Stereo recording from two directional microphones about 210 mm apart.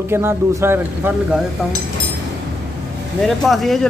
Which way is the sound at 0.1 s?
10° right (ahead or behind).